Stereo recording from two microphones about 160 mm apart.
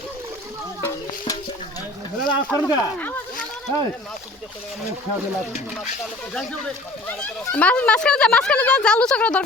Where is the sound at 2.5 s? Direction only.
10° left (ahead or behind).